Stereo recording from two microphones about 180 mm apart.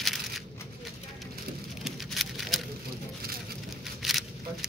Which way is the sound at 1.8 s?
Centre (ahead or behind).